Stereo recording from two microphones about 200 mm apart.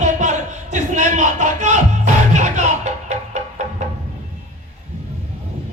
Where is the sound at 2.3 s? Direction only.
35° right (ahead or behind).